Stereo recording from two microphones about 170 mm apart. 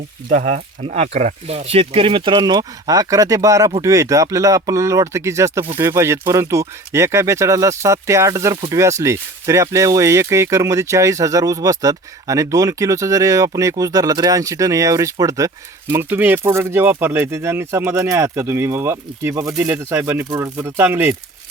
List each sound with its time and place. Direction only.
0.3 s speech: 45° right (ahead or behind); by 21.2 s 10° right (ahead or behind)